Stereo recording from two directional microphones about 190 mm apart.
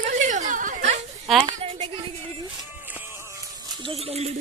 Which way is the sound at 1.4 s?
30° right (ahead or behind).